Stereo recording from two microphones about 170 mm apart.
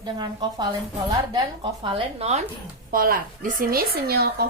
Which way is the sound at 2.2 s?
40° right (ahead or behind).